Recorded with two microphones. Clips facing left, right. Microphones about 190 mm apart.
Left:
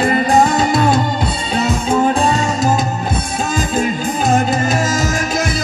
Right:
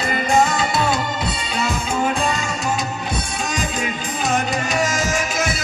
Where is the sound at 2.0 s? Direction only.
35° left (ahead or behind).